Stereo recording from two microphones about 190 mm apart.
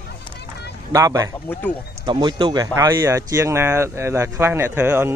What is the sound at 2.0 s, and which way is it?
Speech, 25° right (ahead or behind).